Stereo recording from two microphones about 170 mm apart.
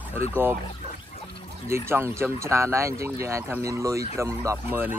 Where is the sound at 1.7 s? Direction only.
15° right (ahead or behind).